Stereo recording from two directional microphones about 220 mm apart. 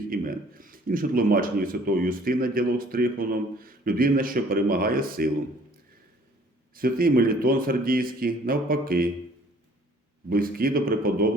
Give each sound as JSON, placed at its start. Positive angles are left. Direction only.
{"t": 0.1, "sound": "speech", "side_deg": -40}
{"t": 6.7, "sound": "speech", "side_deg": -40}
{"t": 10.2, "sound": "speech", "side_deg": -40}